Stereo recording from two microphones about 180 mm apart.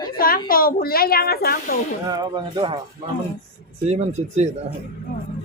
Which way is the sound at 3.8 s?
35° right (ahead or behind).